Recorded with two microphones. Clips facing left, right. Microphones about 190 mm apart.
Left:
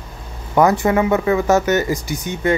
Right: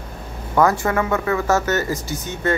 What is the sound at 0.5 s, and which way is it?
Speech, 20° left (ahead or behind).